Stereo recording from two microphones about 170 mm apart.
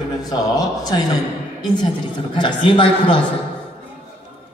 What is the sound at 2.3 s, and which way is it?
Speech, 30° left (ahead or behind).